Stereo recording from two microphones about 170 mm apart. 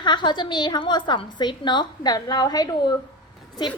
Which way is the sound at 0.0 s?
25° left (ahead or behind).